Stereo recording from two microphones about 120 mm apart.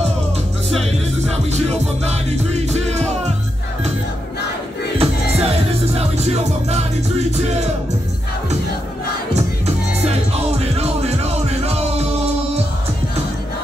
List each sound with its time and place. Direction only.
1.3 s music: 65° right (ahead or behind)
4.9 s music: 55° right (ahead or behind)
10.0 s music: 60° right (ahead or behind)